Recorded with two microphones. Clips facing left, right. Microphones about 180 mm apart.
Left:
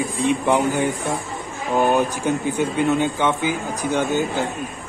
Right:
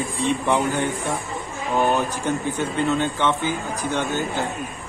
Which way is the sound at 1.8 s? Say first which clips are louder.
Left 3 dB; 15° left (ahead or behind).